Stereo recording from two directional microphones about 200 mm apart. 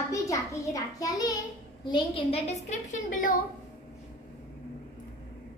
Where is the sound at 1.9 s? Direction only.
30° left (ahead or behind).